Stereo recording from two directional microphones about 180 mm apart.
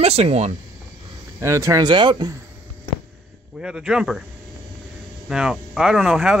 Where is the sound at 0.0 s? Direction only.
35° right (ahead or behind).